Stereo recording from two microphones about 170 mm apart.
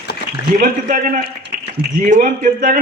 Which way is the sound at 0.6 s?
50° right (ahead or behind).